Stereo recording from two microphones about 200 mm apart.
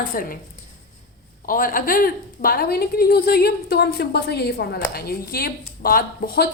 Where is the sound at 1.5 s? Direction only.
45° left (ahead or behind).